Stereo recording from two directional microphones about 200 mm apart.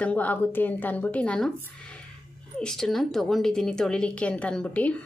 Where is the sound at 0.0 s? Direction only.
5° left (ahead or behind).